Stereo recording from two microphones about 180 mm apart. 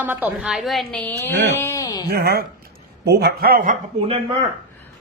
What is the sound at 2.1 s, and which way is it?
A man's voice, 60° right (ahead or behind).